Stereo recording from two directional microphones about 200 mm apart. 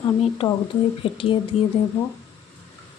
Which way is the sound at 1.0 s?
25° left (ahead or behind).